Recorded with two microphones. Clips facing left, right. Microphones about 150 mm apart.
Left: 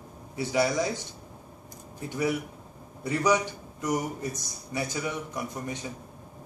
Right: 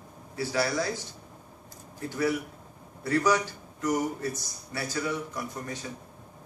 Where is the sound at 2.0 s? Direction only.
15° left (ahead or behind).